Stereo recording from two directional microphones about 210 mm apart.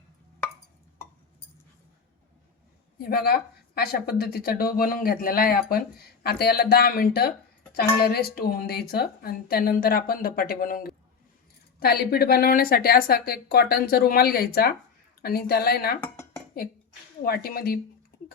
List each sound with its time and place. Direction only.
3.0 s speech: 45° left (ahead or behind)
17.2 s speech: 45° left (ahead or behind)